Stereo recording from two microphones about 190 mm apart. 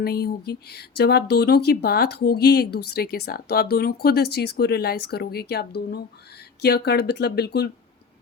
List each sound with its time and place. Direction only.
0.0 s speech: 55° left (ahead or behind)